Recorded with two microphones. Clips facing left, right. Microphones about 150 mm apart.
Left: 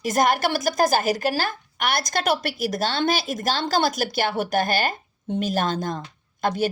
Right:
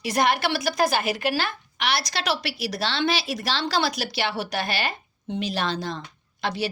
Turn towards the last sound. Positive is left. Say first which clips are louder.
# left 4 dB
turn(degrees=50)  # may be behind; listen again after turning